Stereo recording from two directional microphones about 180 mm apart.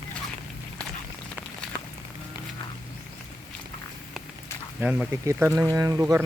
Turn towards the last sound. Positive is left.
turn(degrees=-15)  # may be behind; listen again after turning